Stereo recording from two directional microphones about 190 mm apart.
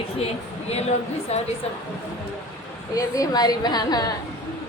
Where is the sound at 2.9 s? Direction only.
20° left (ahead or behind).